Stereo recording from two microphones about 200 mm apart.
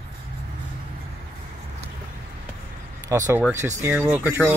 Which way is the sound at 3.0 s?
15° right (ahead or behind).